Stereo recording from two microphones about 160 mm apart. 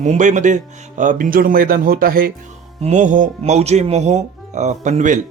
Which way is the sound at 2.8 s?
50° right (ahead or behind).